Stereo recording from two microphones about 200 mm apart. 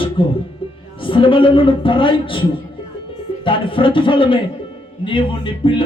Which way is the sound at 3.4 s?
25° left (ahead or behind).